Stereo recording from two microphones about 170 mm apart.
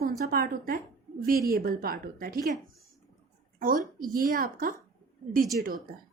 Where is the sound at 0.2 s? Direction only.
60° right (ahead or behind).